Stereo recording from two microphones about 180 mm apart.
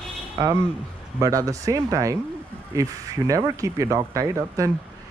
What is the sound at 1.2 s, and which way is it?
Speech, 20° right (ahead or behind).